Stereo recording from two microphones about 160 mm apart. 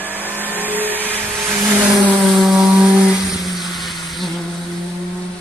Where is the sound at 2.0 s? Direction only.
Centre (ahead or behind).